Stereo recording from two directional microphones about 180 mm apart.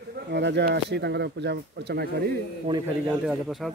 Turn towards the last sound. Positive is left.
turn(degrees=0)  # may be behind; listen again after turning